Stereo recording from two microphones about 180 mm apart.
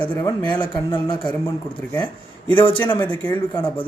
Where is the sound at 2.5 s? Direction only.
25° left (ahead or behind).